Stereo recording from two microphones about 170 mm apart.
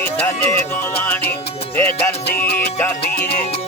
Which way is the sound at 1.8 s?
15° left (ahead or behind).